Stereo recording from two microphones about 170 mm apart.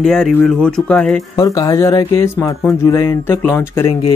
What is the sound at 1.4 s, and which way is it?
Speech, 20° left (ahead or behind).